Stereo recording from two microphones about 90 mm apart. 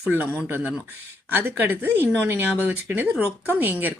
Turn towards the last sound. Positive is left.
turn(degrees=-20)  # may be behind; listen again after turning